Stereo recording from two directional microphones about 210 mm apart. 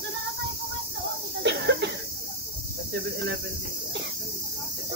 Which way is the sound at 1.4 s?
55° right (ahead or behind).